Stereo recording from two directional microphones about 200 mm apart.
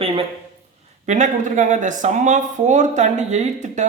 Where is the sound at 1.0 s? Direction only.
35° right (ahead or behind).